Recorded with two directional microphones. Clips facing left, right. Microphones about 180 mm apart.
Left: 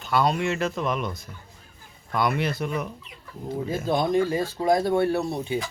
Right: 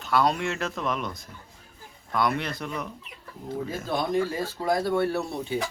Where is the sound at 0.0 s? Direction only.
Centre (ahead or behind).